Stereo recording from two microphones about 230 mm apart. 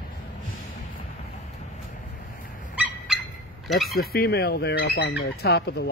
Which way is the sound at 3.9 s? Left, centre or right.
Left.